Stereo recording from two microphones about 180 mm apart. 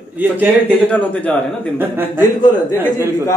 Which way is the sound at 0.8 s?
5° left (ahead or behind).